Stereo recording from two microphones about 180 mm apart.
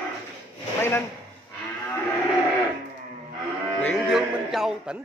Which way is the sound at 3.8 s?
Centre (ahead or behind).